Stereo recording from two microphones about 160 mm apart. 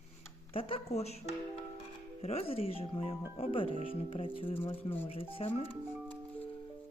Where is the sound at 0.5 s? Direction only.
35° left (ahead or behind).